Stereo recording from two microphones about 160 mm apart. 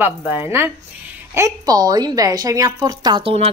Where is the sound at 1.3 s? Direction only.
20° right (ahead or behind).